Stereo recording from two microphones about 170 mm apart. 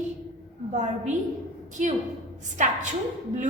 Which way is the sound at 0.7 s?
45° right (ahead or behind).